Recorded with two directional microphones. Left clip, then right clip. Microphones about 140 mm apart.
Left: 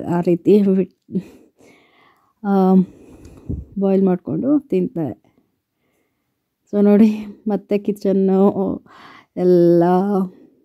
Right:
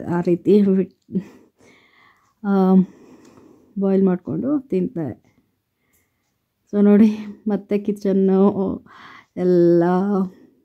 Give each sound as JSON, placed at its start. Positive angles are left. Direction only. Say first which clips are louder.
{"t": 0.0, "sound": "speech", "louder": "left 2 dB", "side_deg": 40}
{"t": 6.7, "sound": "speech", "louder": "left 2 dB", "side_deg": 40}